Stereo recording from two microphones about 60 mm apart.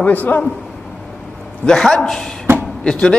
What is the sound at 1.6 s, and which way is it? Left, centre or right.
A man's voice, centre.